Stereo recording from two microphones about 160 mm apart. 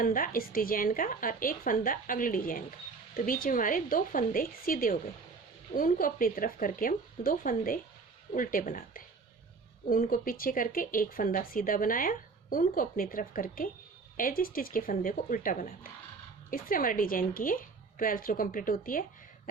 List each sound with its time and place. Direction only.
0.0 s speech: 60° left (ahead or behind)